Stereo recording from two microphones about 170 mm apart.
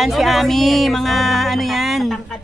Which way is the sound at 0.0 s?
Centre (ahead or behind).